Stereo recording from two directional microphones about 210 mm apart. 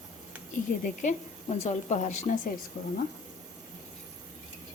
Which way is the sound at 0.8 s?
35° left (ahead or behind).